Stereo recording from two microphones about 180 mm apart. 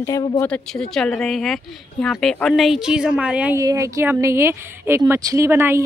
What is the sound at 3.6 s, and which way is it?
Speech, 15° right (ahead or behind).